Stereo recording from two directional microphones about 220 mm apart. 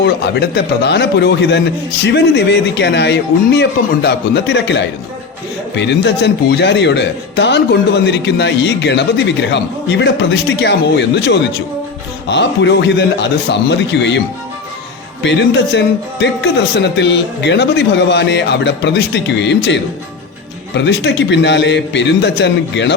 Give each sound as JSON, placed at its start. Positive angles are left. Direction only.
{"t": 0.0, "sound": "speech", "side_deg": 50}
{"t": 15.2, "sound": "speech", "side_deg": 50}